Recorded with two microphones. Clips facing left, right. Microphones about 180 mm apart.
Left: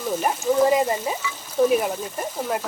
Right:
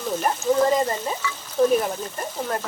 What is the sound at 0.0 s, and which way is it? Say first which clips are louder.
Speech: even; 5° left (ahead or behind).